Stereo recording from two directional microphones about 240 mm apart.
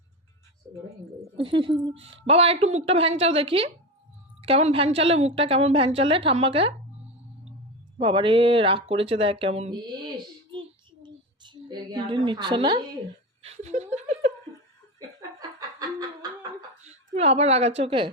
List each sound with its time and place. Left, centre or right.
1.4 s speech: right
7.9 s speech: right
11.0 s a sound: centre
13.4 s laughter: right
14.9 s laughter: centre
16.8 s a woman's voice: right